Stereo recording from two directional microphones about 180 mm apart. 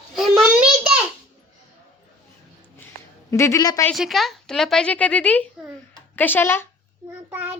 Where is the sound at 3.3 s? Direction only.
15° left (ahead or behind).